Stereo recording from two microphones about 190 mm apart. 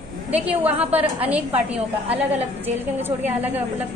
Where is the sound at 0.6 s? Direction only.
10° right (ahead or behind).